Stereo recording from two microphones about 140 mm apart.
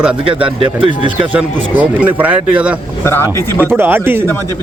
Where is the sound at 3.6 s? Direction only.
15° right (ahead or behind).